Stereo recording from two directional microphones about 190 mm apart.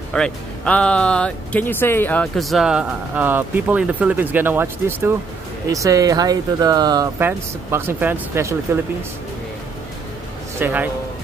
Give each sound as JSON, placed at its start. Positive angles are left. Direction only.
{"t": 0.1, "sound": "speech", "side_deg": 5}
{"t": 10.6, "sound": "speech", "side_deg": -10}